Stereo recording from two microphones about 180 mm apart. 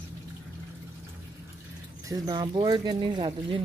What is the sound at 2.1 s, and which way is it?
Speech, 25° right (ahead or behind).